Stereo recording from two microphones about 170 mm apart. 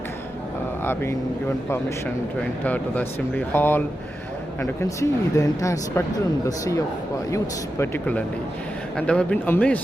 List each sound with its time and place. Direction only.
2.6 s speech: 10° left (ahead or behind)
7.3 s speech: 15° left (ahead or behind)